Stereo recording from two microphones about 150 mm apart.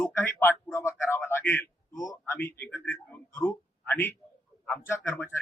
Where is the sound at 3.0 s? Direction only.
15° left (ahead or behind).